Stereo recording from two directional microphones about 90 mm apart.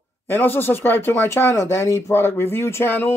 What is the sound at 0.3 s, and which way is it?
Speech, 25° left (ahead or behind).